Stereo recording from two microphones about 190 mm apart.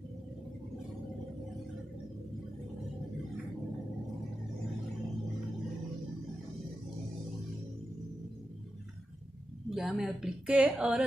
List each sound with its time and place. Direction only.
9.7 s a woman's voice: centre (ahead or behind)